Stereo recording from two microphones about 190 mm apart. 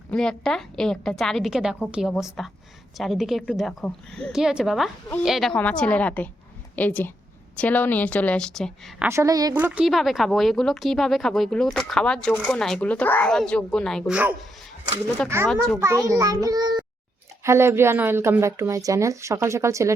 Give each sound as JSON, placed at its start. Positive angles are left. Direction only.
{"t": 0.1, "sound": "a woman's voice", "side_deg": 5}
{"t": 9.0, "sound": "speech", "side_deg": -15}
{"t": 16.0, "sound": "a child's voice", "side_deg": -15}